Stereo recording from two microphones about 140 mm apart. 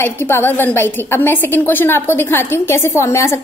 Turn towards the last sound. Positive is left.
turn(degrees=20)  # may be behind; listen again after turning